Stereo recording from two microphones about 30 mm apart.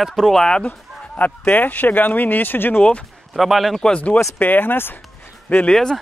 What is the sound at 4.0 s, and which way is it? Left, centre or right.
Speech, left.